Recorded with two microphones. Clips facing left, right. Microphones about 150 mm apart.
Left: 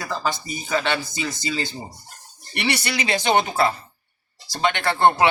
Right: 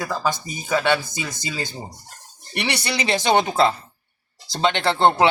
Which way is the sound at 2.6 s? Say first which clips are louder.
Even; 20° right (ahead or behind).